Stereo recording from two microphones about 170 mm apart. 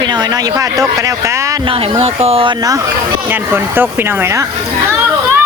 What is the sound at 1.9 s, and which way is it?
Speech, 35° right (ahead or behind).